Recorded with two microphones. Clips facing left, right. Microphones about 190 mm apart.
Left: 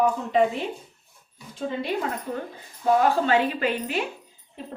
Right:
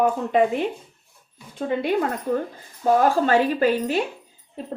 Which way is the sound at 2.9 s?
45° right (ahead or behind).